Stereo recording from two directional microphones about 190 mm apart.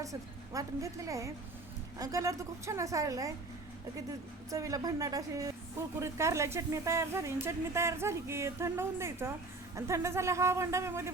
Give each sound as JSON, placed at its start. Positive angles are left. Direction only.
{"t": 0.0, "sound": "a woman's voice", "side_deg": -15}
{"t": 4.5, "sound": "a woman's voice", "side_deg": -20}